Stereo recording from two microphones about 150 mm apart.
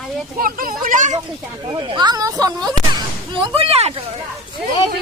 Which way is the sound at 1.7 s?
30° right (ahead or behind).